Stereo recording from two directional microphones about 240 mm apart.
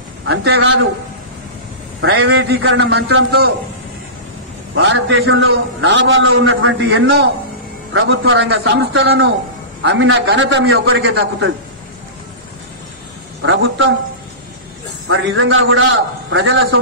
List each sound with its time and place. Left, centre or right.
0.2 s a man's voice: right
2.0 s a man's voice: right
2.2 s a man's voice: right
4.8 s a man's voice: right
13.4 s a man's voice: right
15.0 s a man's voice: right